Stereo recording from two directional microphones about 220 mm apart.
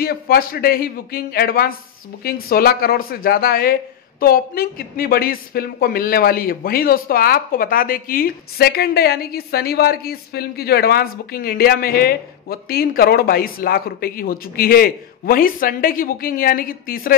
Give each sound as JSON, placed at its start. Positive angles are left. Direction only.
{"t": 0.0, "sound": "a woman's voice", "side_deg": 45}